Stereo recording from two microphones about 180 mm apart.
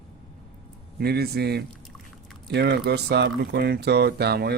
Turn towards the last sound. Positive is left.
turn(degrees=-60)  # may be behind; listen again after turning